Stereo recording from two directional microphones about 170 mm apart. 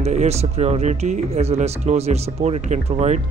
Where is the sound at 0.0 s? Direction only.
40° right (ahead or behind).